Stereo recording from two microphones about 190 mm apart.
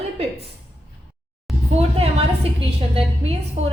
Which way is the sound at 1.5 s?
Centre (ahead or behind).